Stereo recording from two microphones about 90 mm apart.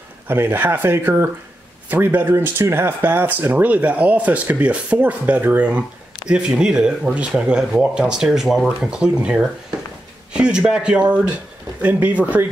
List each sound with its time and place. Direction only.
0.3 s speech: 25° right (ahead or behind)